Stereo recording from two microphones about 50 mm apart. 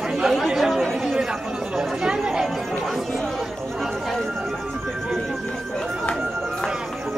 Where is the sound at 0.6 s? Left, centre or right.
Centre.